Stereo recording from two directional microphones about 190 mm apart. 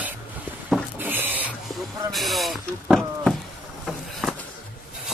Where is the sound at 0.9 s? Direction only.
10° right (ahead or behind).